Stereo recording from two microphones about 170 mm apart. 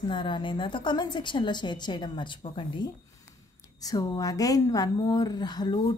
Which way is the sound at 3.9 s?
20° left (ahead or behind).